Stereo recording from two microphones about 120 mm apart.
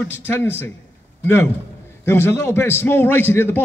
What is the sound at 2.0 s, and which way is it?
A man's voice, 20° left (ahead or behind).